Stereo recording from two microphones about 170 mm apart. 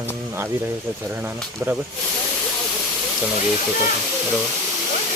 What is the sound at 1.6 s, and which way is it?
Speech, 15° right (ahead or behind).